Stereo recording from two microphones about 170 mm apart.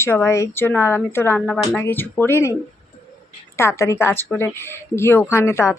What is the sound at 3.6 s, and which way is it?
Speech, 15° left (ahead or behind).